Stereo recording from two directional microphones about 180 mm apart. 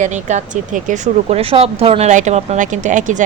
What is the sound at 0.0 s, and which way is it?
Speech, 40° right (ahead or behind).